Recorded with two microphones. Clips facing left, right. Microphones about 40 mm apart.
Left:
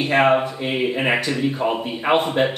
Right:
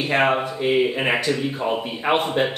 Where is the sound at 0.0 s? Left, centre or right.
Centre.